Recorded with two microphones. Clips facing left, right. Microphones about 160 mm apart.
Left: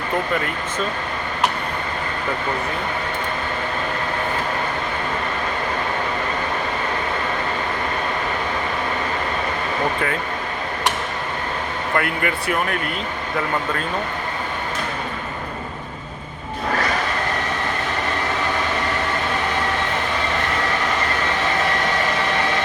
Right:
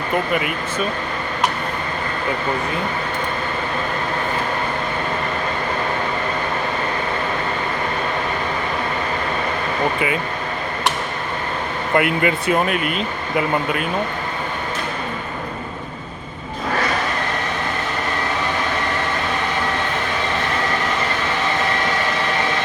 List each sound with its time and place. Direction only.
11.9 s speech: 20° right (ahead or behind)